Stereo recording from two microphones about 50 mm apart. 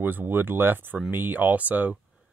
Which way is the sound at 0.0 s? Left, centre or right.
Right.